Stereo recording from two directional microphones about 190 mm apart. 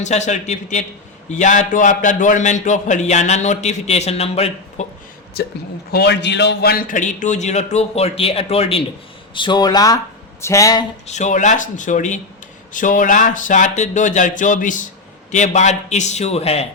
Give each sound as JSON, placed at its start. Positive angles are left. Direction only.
{"t": 0.0, "sound": "a man's voice", "side_deg": 35}
{"t": 5.9, "sound": "a man's voice", "side_deg": 60}
{"t": 11.0, "sound": "a man's voice", "side_deg": 40}